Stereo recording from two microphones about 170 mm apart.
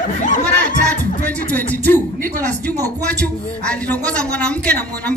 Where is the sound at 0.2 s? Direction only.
50° left (ahead or behind).